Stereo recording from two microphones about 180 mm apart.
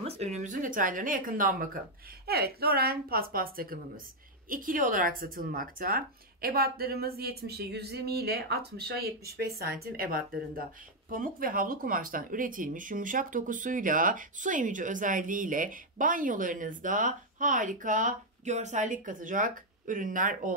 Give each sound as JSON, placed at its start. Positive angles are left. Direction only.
{"t": 0.0, "sound": "speech", "side_deg": -35}